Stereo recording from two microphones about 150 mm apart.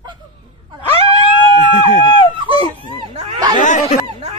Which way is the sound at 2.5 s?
30° left (ahead or behind).